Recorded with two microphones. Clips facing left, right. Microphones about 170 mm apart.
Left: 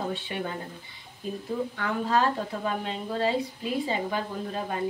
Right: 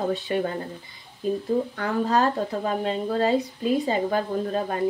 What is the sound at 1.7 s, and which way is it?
A woman's voice, 40° right (ahead or behind).